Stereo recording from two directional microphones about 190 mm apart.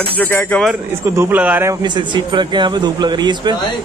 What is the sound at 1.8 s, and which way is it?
Speech, 25° right (ahead or behind).